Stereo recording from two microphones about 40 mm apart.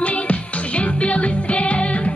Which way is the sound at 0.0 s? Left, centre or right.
Left.